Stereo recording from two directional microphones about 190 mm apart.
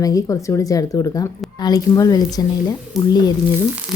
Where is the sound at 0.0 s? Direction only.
20° left (ahead or behind).